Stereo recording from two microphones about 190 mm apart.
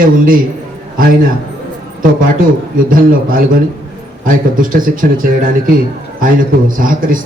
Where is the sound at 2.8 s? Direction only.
45° right (ahead or behind).